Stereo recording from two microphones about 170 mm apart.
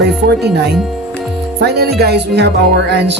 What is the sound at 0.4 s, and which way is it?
Speech, 75° right (ahead or behind).